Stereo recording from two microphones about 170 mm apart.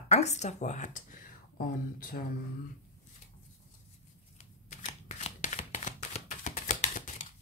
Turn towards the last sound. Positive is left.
turn(degrees=50)  # may be behind; listen again after turning